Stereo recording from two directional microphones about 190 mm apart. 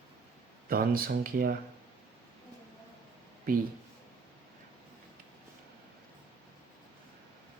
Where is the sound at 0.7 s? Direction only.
50° right (ahead or behind).